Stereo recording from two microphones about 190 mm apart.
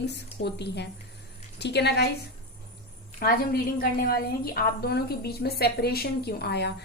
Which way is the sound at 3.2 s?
50° left (ahead or behind).